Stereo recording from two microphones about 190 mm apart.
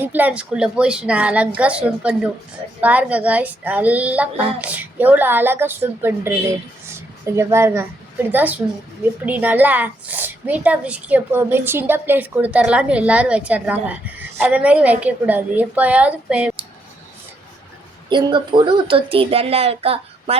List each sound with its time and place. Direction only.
0.0 s a woman's voice: 10° right (ahead or behind)
18.1 s speech: 25° right (ahead or behind)